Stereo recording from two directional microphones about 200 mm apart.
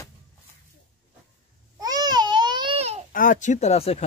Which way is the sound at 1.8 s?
20° right (ahead or behind).